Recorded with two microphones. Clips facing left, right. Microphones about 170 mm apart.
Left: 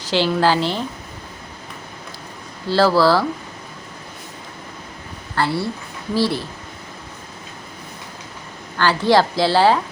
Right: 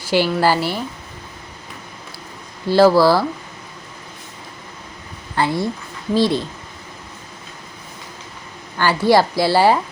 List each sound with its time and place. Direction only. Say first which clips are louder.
0.1 s a woman's voice: right 1 dB; 10° right (ahead or behind)
2.6 s a woman's voice: right 3 dB; 15° right (ahead or behind)
5.4 s a woman's voice: right 2 dB; 15° right (ahead or behind)
8.8 s a woman's voice: right 1 dB; 10° right (ahead or behind)